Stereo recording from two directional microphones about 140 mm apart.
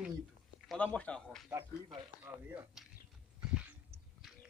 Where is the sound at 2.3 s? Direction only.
15° right (ahead or behind).